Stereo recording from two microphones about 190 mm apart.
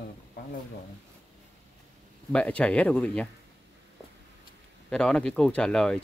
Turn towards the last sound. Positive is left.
turn(degrees=5)  # may be behind; listen again after turning